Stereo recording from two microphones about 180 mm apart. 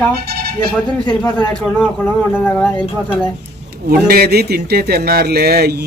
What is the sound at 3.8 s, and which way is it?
Speech, 55° right (ahead or behind).